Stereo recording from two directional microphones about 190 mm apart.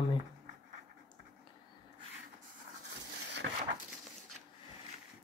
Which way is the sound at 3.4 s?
75° right (ahead or behind).